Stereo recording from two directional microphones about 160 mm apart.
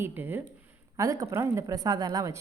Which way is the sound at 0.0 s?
15° right (ahead or behind).